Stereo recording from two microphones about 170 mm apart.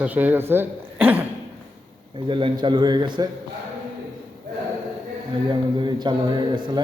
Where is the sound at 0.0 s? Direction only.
10° right (ahead or behind).